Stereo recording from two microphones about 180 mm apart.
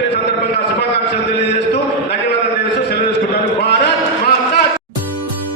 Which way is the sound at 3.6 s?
65° left (ahead or behind).